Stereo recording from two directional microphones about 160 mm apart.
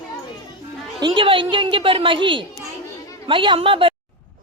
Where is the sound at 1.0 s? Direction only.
30° right (ahead or behind).